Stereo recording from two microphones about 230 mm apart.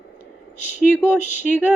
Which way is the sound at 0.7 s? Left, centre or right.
Centre.